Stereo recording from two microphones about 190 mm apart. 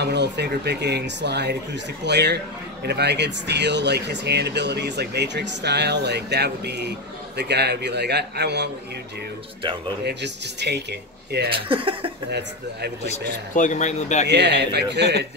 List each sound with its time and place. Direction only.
0.0 s speech: 60° right (ahead or behind)
10.0 s speech: 65° right (ahead or behind)
11.5 s speech: 30° right (ahead or behind)
12.3 s speech: 60° right (ahead or behind)
13.6 s speech: 40° left (ahead or behind)
14.2 s speech: 65° right (ahead or behind)